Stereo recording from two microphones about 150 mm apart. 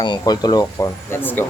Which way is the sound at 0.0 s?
30° left (ahead or behind).